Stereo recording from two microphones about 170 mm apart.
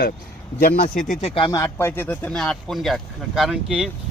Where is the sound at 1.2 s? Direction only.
30° left (ahead or behind).